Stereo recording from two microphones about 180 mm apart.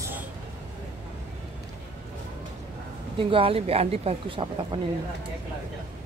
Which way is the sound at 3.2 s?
30° right (ahead or behind).